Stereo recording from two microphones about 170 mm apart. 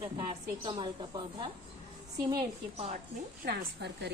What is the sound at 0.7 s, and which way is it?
Speech, 25° right (ahead or behind).